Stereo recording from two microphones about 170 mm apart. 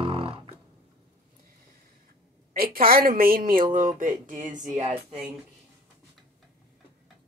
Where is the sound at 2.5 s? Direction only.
60° right (ahead or behind).